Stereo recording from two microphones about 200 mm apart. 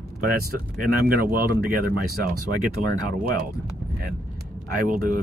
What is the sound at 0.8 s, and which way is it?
Speech, 45° right (ahead or behind).